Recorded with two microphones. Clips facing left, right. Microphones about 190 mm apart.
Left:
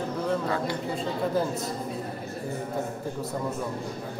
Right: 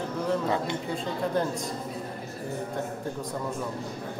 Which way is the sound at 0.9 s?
Centre (ahead or behind).